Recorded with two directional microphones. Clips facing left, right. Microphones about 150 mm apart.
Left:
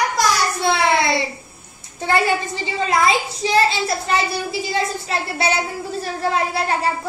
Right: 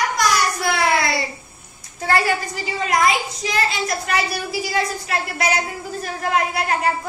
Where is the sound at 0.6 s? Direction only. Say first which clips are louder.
Left 5 dB; 25° left (ahead or behind).